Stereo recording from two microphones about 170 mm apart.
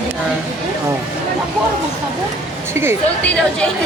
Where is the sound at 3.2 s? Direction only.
5° left (ahead or behind).